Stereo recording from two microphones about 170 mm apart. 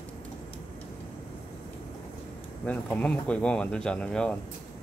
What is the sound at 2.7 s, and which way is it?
Speech, 10° left (ahead or behind).